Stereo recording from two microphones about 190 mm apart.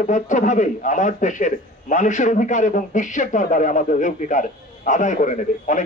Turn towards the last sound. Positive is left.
turn(degrees=40)  # may be behind; listen again after turning